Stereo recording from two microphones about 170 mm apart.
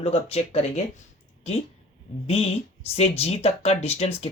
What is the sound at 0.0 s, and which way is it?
Speech, 35° left (ahead or behind).